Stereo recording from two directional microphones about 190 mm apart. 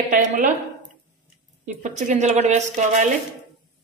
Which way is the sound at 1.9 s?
40° right (ahead or behind).